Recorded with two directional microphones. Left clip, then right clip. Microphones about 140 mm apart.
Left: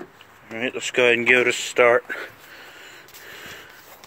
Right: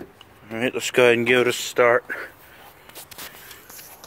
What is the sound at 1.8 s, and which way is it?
Speech, 30° left (ahead or behind).